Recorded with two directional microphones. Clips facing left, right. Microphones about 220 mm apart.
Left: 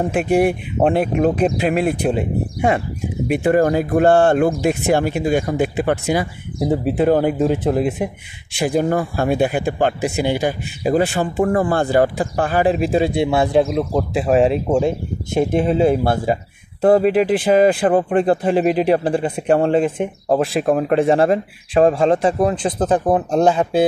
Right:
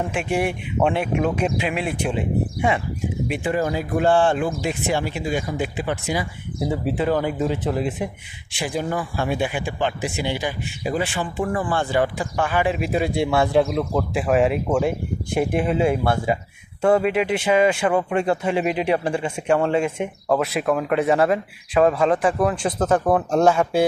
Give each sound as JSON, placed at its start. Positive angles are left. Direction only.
{"t": 0.0, "sound": "speech", "side_deg": 40}
{"t": 3.3, "sound": "speech", "side_deg": 55}